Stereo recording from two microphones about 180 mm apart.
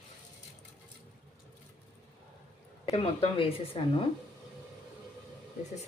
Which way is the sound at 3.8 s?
30° left (ahead or behind).